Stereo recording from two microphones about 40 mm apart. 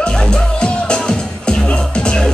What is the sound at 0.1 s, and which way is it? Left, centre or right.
Music, left.